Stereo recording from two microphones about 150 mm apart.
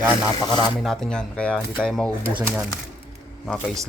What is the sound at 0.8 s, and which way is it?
Speech, 5° left (ahead or behind).